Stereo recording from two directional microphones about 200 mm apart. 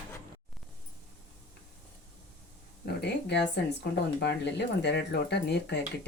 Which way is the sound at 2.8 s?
55° left (ahead or behind).